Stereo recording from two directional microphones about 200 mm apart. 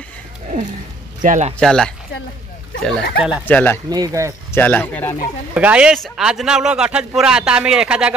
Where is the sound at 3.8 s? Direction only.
20° right (ahead or behind).